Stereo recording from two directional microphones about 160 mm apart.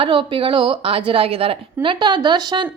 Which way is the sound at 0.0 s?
30° right (ahead or behind).